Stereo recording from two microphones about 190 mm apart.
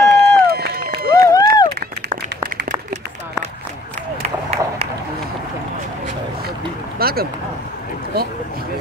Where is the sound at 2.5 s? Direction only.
45° right (ahead or behind).